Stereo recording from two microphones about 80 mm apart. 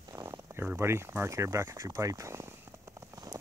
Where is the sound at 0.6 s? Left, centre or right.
Right.